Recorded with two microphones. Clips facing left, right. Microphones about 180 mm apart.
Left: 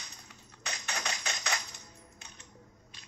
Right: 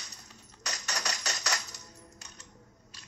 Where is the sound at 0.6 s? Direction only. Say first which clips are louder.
Right 1 dB; 40° right (ahead or behind).